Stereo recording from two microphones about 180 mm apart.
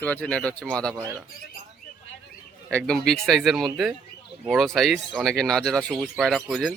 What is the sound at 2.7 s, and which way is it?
Speech, 5° left (ahead or behind).